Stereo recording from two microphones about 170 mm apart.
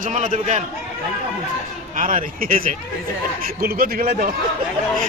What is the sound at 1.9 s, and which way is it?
A man's voice, 50° right (ahead or behind).